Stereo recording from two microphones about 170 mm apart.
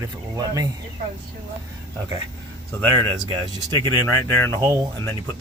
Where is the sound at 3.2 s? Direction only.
25° right (ahead or behind).